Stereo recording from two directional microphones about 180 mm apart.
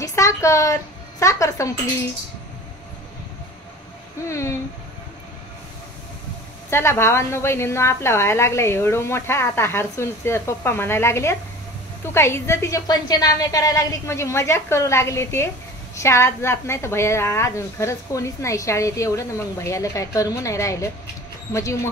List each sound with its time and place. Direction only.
0.0 s a sound: 15° left (ahead or behind)
1.2 s a woman's voice: 15° left (ahead or behind)
4.3 s a woman's voice: 15° left (ahead or behind)
6.7 s a woman's voice: 15° left (ahead or behind)